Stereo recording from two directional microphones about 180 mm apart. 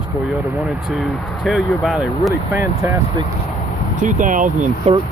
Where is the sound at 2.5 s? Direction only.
15° right (ahead or behind).